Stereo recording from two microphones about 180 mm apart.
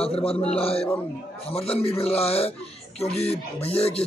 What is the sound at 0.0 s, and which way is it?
Speech, 35° left (ahead or behind).